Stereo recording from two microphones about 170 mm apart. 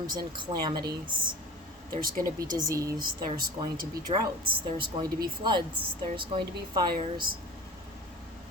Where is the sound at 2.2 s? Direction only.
20° right (ahead or behind).